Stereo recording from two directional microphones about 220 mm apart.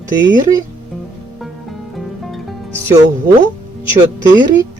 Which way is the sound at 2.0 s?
Centre (ahead or behind).